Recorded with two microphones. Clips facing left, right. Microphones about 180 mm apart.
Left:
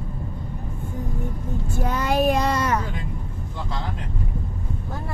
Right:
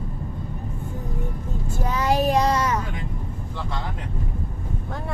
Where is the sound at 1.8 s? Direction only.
55° left (ahead or behind).